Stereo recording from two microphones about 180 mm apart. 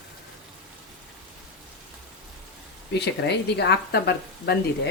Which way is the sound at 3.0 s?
70° left (ahead or behind).